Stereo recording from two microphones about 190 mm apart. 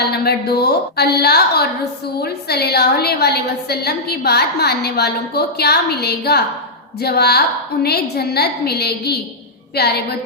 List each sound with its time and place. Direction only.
0.1 s a woman's voice: 55° left (ahead or behind)